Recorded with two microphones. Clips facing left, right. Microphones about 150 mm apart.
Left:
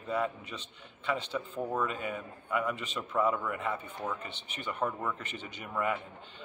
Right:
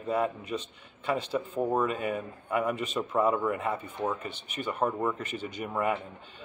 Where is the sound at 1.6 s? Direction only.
30° right (ahead or behind).